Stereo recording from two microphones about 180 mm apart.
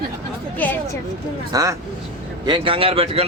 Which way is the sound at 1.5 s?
20° right (ahead or behind).